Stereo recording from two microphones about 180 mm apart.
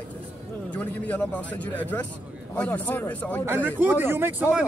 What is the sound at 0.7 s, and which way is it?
A man's voice, 10° left (ahead or behind).